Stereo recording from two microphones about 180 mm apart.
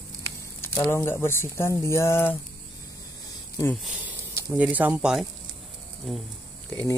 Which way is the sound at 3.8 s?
10° right (ahead or behind).